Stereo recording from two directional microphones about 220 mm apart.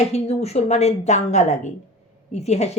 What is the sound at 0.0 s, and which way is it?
Speech, 30° left (ahead or behind).